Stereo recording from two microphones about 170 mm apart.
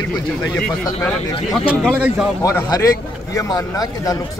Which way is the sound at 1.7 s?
5° right (ahead or behind).